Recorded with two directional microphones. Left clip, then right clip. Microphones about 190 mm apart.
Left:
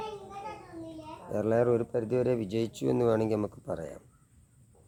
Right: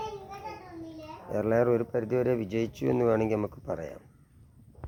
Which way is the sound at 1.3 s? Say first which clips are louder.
Right 1 dB; 10° left (ahead or behind).